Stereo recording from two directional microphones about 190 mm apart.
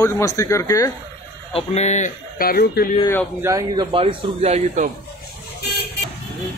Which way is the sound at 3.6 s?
25° right (ahead or behind).